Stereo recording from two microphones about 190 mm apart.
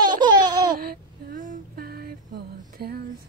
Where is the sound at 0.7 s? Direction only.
50° right (ahead or behind).